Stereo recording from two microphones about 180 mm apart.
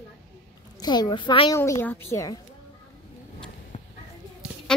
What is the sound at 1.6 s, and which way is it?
Speech, 10° left (ahead or behind).